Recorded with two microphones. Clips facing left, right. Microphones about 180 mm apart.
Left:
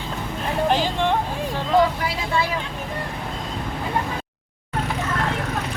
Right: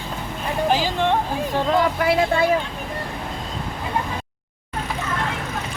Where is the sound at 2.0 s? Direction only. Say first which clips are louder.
Right 6 dB; 55° right (ahead or behind).